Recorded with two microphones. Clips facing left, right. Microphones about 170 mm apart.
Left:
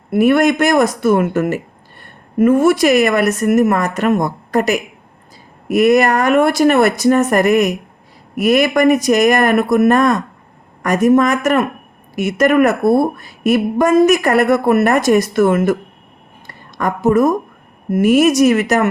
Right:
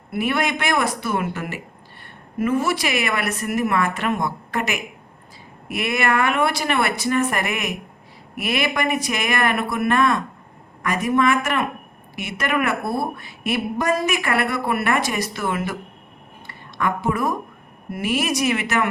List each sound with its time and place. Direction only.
0.1 s a woman's voice: 45° left (ahead or behind)